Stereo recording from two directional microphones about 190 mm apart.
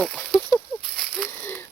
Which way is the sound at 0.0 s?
Centre (ahead or behind).